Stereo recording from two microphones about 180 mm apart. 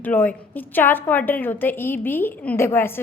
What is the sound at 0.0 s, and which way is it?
A woman's voice, 10° left (ahead or behind).